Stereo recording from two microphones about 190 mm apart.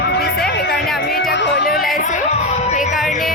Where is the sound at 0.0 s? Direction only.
60° left (ahead or behind).